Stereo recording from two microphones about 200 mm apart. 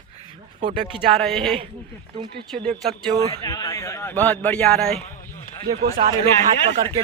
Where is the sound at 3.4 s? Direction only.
20° left (ahead or behind); by 5.1 s 5° left (ahead or behind).